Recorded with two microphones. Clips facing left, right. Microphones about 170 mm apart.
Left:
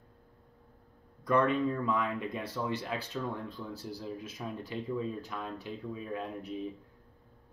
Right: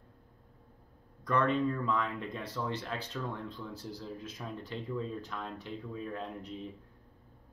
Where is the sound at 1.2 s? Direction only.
10° left (ahead or behind).